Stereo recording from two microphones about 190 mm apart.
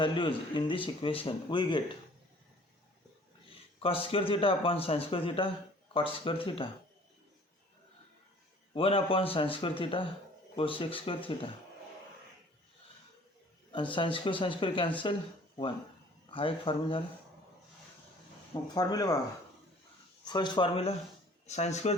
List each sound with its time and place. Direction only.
0.0 s speech: 25° left (ahead or behind)
3.8 s speech: 30° left (ahead or behind)
8.7 s speech: 30° left (ahead or behind)
13.9 s speech: 25° left (ahead or behind)
16.3 s speech: 30° left (ahead or behind)
18.7 s speech: 20° left (ahead or behind)
20.2 s speech: 25° left (ahead or behind)